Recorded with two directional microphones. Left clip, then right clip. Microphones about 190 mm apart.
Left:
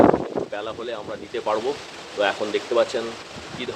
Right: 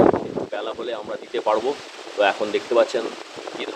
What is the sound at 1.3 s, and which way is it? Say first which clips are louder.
Speech: right 3 dB; 30° right (ahead or behind).